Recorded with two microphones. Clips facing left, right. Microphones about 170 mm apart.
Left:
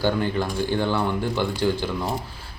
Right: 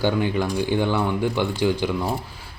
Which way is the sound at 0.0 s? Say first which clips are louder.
Right 1 dB; 15° right (ahead or behind).